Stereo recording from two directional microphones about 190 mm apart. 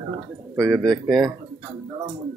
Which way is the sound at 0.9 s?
Centre (ahead or behind).